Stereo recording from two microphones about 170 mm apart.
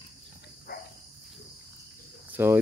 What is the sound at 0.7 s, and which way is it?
Dog, 60° left (ahead or behind).